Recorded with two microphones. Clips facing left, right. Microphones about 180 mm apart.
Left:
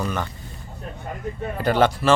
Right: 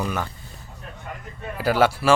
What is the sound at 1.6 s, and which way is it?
Speech, 5° right (ahead or behind).